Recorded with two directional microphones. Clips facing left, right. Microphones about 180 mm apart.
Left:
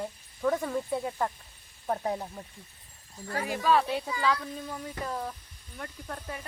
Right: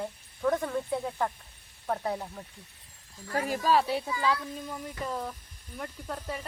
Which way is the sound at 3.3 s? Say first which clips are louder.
Even; 40° right (ahead or behind).